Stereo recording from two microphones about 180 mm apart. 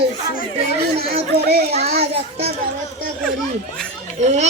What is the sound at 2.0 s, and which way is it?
Speech, 35° right (ahead or behind).